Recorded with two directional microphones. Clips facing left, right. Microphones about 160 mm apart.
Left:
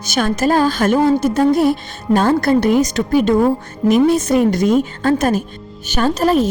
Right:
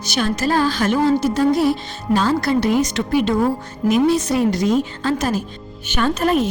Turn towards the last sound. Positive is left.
turn(degrees=35)  # may be behind; listen again after turning